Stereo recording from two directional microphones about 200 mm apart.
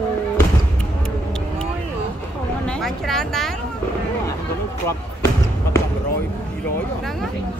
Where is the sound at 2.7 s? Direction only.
Centre (ahead or behind).